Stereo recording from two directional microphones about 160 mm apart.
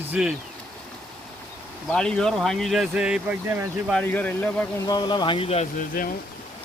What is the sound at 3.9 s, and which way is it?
Speech, 10° left (ahead or behind).